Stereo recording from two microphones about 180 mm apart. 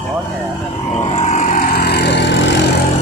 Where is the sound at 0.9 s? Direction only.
30° left (ahead or behind).